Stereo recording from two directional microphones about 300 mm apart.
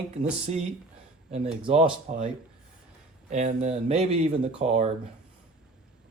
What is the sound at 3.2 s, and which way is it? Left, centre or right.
A man's voice, right.